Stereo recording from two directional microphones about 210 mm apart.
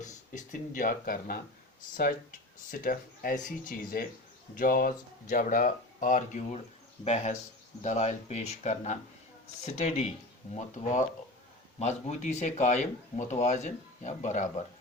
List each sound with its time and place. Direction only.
0.0 s speech: 40° left (ahead or behind)
2.6 s speech: 40° left (ahead or behind)